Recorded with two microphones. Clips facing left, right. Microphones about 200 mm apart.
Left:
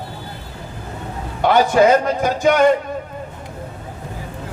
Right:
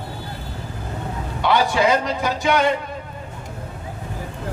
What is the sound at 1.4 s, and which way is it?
A man's voice, 45° left (ahead or behind).